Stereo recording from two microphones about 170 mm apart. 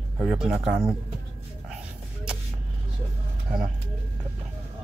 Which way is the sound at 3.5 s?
5° right (ahead or behind).